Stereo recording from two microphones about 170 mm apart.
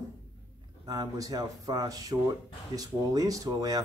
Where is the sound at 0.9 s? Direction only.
20° right (ahead or behind).